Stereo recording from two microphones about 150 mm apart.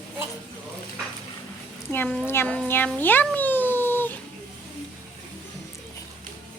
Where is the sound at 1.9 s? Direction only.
15° left (ahead or behind).